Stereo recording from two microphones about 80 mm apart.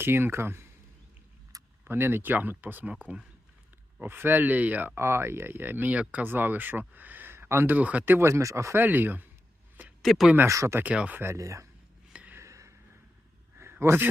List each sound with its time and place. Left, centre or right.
0.0 s speech: right
1.8 s speech: right
4.0 s speech: right
4.9 s speech: right
7.8 s speech: centre
10.0 s speech: centre
10.5 s speech: right
10.8 s speech: centre
11.2 s speech: right
12.0 s a sound: centre
12.3 s a sound: right